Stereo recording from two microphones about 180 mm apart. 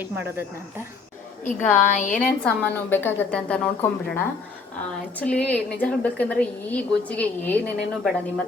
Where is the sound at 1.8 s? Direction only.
45° left (ahead or behind).